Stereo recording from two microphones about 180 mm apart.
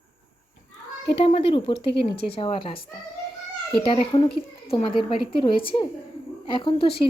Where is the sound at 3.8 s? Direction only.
30° left (ahead or behind).